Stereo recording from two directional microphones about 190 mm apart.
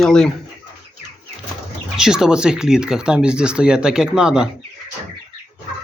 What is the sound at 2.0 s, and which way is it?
Speech, 5° right (ahead or behind).